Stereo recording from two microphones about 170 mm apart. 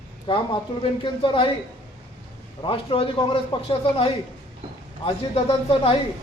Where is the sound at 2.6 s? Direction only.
30° left (ahead or behind).